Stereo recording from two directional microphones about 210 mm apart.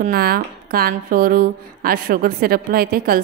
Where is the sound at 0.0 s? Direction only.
45° right (ahead or behind).